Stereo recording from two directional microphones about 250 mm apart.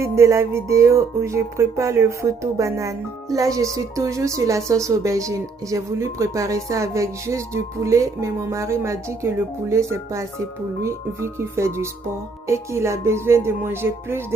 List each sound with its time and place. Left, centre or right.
0.0 s speech: centre